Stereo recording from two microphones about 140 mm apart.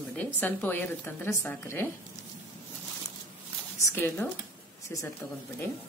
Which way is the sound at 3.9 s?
15° left (ahead or behind).